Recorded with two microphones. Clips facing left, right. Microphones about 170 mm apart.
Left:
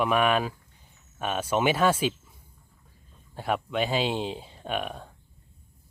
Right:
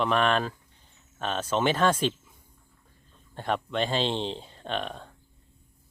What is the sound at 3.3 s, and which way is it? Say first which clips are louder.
Speech: left 1 dB; 5° left (ahead or behind).